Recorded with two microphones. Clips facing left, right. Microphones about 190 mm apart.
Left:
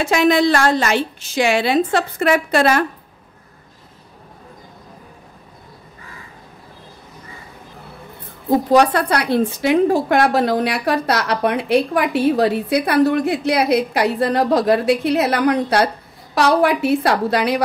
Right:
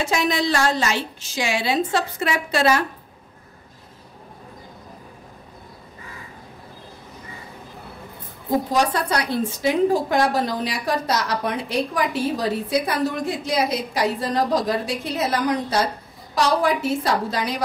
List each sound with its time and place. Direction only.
0.0 s a woman's voice: 60° left (ahead or behind)
8.7 s a woman's voice: 65° left (ahead or behind)